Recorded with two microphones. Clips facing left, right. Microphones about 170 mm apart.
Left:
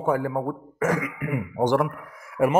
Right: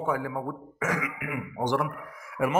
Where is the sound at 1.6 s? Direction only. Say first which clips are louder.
Left 6 dB; 55° left (ahead or behind).